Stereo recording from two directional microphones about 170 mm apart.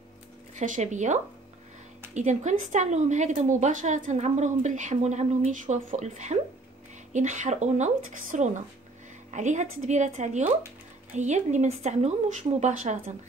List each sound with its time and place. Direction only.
0.6 s a woman's voice: 45° right (ahead or behind)